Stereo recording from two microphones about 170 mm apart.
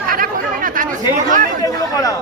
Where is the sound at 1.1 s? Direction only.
50° right (ahead or behind).